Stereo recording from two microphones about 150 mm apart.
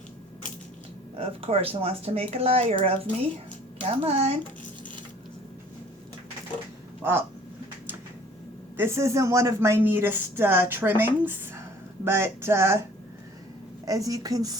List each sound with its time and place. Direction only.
1.1 s a woman's voice: 40° right (ahead or behind)
7.0 s a sound: 15° right (ahead or behind)
8.7 s speech: 15° right (ahead or behind)
13.8 s a woman's voice: 25° right (ahead or behind)